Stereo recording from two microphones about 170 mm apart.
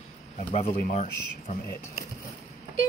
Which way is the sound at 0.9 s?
45° left (ahead or behind).